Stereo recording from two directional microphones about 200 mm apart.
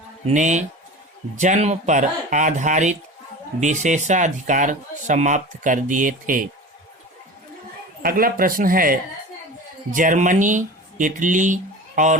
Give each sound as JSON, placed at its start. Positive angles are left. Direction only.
{"t": 0.3, "sound": "speech", "side_deg": -35}
{"t": 8.0, "sound": "a man's voice", "side_deg": -45}